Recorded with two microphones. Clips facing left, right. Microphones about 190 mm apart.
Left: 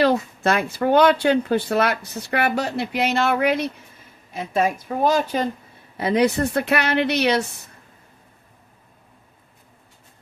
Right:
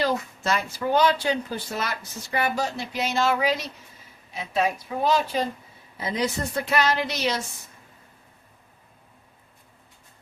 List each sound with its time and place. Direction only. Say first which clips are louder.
0.0 s a woman's voice: left 7 dB; 60° left (ahead or behind)
6.0 s speech: left 8 dB; 65° left (ahead or behind)